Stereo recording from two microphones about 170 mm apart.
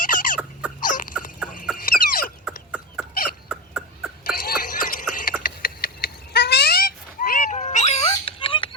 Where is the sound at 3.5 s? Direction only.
5° right (ahead or behind).